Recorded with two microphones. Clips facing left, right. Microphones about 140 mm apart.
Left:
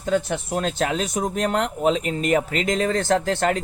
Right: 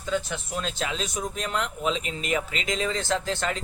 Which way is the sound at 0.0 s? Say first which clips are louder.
Left 6 dB; 55° left (ahead or behind).